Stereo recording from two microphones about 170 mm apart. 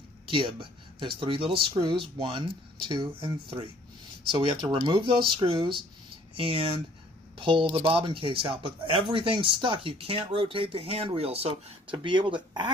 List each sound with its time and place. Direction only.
0.3 s speech: 30° right (ahead or behind)